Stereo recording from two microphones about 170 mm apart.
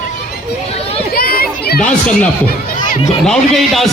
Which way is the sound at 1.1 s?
60° left (ahead or behind).